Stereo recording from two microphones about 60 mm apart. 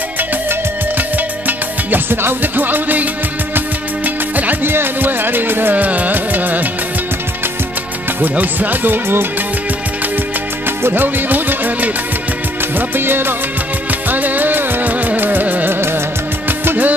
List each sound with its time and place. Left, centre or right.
0.5 s music: right
8.2 s music: right
10.8 s music: right